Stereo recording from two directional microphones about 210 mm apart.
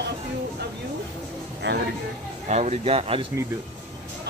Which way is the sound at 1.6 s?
60° right (ahead or behind).